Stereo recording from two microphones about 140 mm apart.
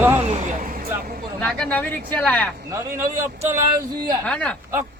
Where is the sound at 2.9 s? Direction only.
90° right.